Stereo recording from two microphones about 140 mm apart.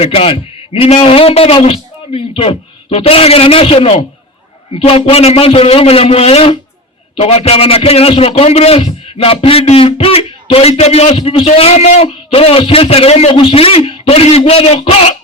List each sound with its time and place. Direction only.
0.0 s a man's voice: 45° left (ahead or behind)